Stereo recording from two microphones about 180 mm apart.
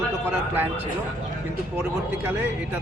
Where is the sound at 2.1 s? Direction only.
10° right (ahead or behind).